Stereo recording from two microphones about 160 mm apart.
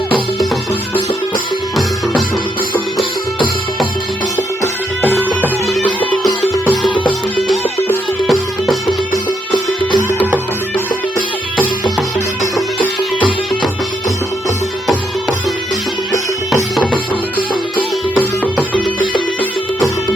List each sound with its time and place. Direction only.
5.6 s music: 5° left (ahead or behind)
7.3 s music: centre (ahead or behind)
13.1 s music: 30° left (ahead or behind)